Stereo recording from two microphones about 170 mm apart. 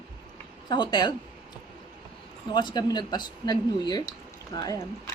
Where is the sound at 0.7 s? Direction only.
25° left (ahead or behind).